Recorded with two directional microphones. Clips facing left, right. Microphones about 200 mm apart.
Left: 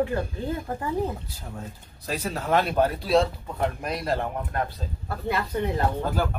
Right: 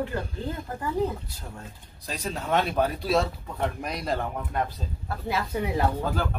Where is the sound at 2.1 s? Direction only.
Centre (ahead or behind).